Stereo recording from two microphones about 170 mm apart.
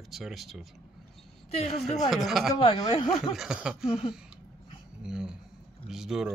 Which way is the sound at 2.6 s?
30° left (ahead or behind).